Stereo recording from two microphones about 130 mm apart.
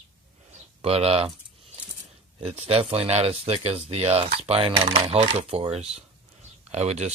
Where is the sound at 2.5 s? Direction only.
50° right (ahead or behind).